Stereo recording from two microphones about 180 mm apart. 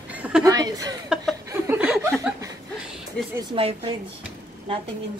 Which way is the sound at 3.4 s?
30° right (ahead or behind).